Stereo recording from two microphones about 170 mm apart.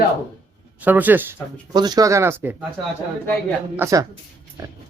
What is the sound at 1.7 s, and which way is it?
Speech, 25° right (ahead or behind).